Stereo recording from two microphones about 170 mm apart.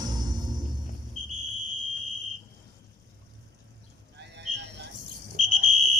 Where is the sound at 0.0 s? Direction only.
25° right (ahead or behind).